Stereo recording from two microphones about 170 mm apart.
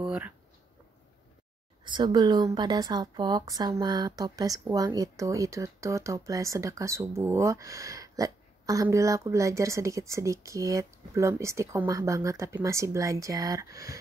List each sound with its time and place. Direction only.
0.0 s speech: 5° right (ahead or behind)
1.9 s a woman's voice: 25° right (ahead or behind)